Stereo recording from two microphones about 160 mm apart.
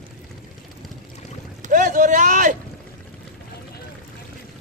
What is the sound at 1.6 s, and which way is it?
Vehicle, 50° right (ahead or behind).